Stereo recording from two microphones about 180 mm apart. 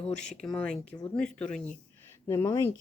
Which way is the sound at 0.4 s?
5° left (ahead or behind).